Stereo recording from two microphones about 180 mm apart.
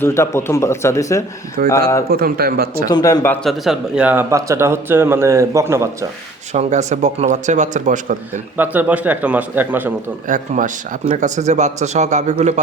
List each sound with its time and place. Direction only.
0.0 s speech: 15° left (ahead or behind)
2.0 s a man's voice: 55° right (ahead or behind)
2.8 s speech: 20° left (ahead or behind)
3.4 s speech: centre (ahead or behind)
6.5 s a man's voice: 40° right (ahead or behind)
8.3 s speech: 10° right (ahead or behind)
10.2 s a man's voice: 45° right (ahead or behind)